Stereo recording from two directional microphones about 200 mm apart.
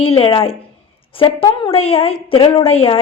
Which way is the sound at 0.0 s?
30° left (ahead or behind).